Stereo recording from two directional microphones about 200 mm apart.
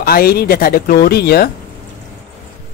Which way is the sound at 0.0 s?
50° left (ahead or behind).